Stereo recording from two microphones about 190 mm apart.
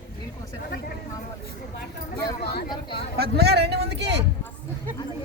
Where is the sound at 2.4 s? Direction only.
55° left (ahead or behind).